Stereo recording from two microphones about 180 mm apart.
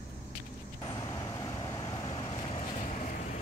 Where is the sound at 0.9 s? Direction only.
20° left (ahead or behind).